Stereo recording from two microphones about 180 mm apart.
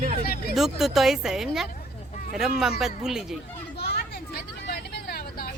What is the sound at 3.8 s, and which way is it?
Vehicle, 65° left (ahead or behind).